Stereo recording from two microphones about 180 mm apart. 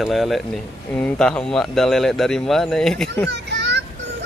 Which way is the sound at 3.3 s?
75° right (ahead or behind).